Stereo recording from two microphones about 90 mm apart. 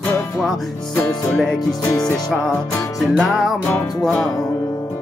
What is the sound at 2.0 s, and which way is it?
Music, 5° left (ahead or behind).